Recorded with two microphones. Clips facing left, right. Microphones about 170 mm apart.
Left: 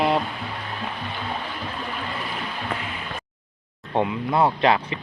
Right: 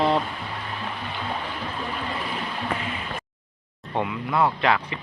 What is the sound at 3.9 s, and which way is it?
Speech, 25° left (ahead or behind).